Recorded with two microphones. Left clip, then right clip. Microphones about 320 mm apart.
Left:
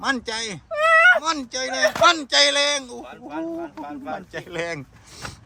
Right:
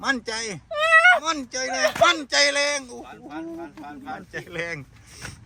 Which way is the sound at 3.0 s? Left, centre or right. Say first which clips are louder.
Left 3 dB; left.